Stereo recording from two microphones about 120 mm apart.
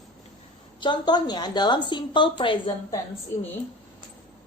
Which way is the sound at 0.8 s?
40° left (ahead or behind).